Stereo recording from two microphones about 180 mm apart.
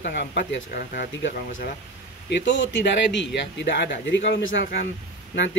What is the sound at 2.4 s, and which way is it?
Speech, 90° left.